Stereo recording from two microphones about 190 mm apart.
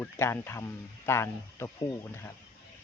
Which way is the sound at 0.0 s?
15° left (ahead or behind).